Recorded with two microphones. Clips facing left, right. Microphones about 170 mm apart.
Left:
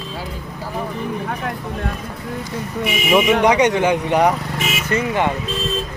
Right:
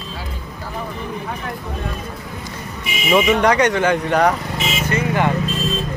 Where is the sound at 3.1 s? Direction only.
15° left (ahead or behind).